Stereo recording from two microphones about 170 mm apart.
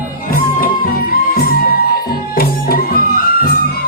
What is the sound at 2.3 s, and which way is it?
Music, 60° left (ahead or behind).